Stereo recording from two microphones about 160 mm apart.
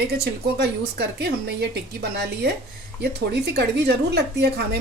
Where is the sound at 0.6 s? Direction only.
90° right.